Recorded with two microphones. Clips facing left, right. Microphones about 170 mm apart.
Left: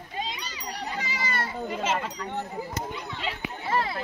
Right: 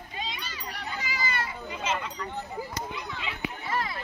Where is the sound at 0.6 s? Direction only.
35° left (ahead or behind).